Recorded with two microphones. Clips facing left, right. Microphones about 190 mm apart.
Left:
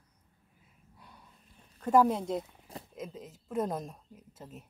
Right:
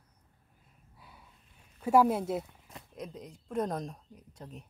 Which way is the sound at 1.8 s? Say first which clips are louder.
Even; 10° right (ahead or behind).